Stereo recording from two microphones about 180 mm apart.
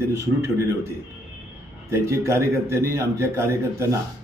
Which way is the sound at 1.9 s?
15° right (ahead or behind).